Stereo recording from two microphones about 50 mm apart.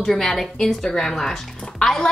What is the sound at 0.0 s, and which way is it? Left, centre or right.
A woman's voice, centre.